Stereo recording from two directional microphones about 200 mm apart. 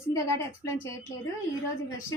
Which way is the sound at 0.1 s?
15° left (ahead or behind).